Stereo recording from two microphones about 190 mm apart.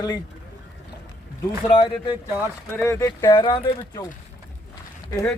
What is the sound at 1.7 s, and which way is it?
Speech, 25° left (ahead or behind).